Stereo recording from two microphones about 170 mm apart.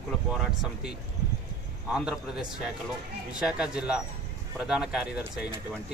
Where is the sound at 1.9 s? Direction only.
Centre (ahead or behind).